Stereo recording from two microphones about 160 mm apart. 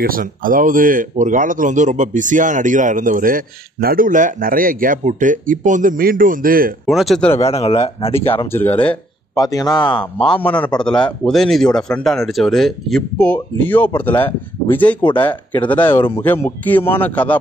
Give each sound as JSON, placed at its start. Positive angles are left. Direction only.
{"t": 0.0, "sound": "speech", "side_deg": -65}
{"t": 6.9, "sound": "speech", "side_deg": 0}
{"t": 7.3, "sound": "speech", "side_deg": 40}
{"t": 8.5, "sound": "speech", "side_deg": 10}
{"t": 9.3, "sound": "a man's voice", "side_deg": 20}
{"t": 10.2, "sound": "speech", "side_deg": 5}